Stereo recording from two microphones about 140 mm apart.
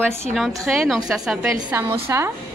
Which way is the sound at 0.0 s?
Centre (ahead or behind).